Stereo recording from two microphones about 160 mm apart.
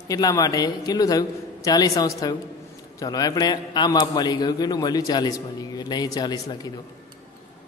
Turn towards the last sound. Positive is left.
turn(degrees=25)  # may be behind; listen again after turning